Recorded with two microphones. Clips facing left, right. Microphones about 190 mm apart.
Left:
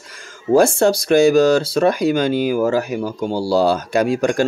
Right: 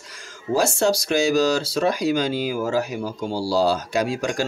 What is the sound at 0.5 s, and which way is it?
Speech, 55° left (ahead or behind).